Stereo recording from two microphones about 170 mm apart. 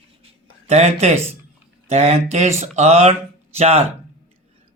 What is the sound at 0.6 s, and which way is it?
Speech, 40° right (ahead or behind).